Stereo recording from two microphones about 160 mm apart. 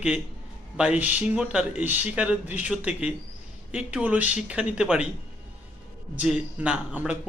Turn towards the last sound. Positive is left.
turn(degrees=-5)  # may be behind; listen again after turning